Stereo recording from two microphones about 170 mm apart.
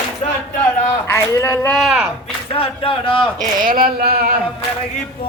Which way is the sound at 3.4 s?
55° right (ahead or behind).